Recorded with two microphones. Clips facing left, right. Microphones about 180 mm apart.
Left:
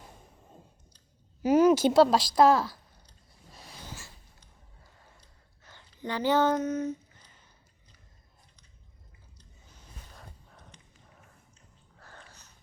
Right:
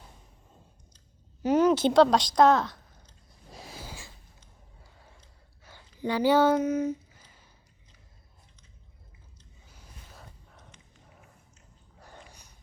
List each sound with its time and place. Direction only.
1.4 s a woman's voice: 10° left (ahead or behind)
3.5 s snort: centre (ahead or behind)
5.6 s a sound: 10° right (ahead or behind)
9.7 s boat: 5° right (ahead or behind)
10.7 s a sound: 35° left (ahead or behind)
11.9 s sniff: 15° right (ahead or behind)